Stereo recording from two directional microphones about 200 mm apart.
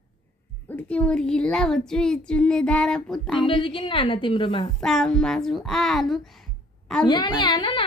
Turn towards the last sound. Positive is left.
turn(degrees=25)  # may be behind; listen again after turning